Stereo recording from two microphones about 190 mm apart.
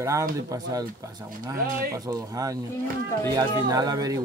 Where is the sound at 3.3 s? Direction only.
20° right (ahead or behind).